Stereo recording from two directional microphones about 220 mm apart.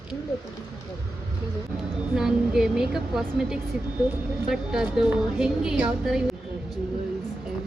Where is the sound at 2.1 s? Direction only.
5° right (ahead or behind).